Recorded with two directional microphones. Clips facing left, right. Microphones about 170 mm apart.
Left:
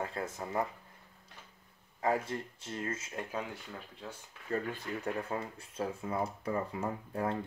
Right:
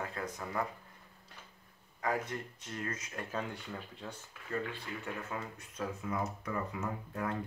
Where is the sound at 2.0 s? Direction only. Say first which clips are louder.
Left 3 dB; 25° left (ahead or behind).